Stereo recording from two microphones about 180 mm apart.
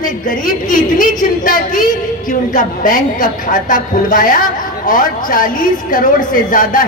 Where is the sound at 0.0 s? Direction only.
50° left (ahead or behind).